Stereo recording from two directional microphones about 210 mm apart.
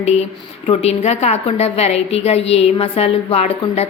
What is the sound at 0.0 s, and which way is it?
A woman's voice, 30° left (ahead or behind).